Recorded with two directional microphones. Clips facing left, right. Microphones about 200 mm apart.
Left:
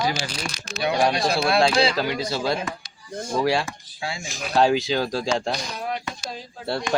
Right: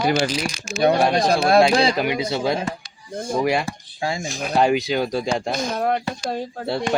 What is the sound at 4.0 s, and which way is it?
Speech, 45° right (ahead or behind).